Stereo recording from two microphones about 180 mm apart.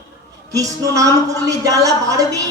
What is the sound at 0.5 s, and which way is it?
A man's voice, 20° right (ahead or behind).